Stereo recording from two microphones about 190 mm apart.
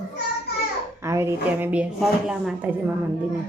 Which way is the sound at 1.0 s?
15° right (ahead or behind).